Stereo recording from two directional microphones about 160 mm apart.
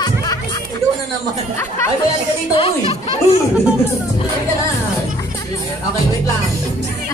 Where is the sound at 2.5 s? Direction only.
35° left (ahead or behind).